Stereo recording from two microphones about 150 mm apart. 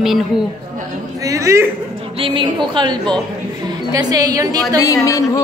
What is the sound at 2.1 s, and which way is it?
A woman's voice, 35° right (ahead or behind).